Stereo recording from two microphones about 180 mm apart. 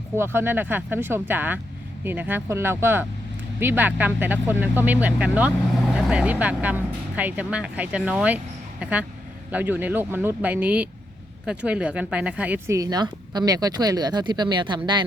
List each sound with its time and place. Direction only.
0.2 s speech: 15° right (ahead or behind)